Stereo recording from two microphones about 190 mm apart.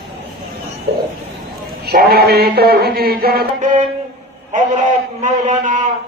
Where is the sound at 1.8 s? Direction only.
55° right (ahead or behind).